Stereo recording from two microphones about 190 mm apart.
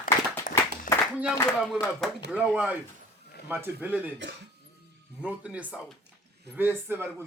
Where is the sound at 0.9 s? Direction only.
45° left (ahead or behind).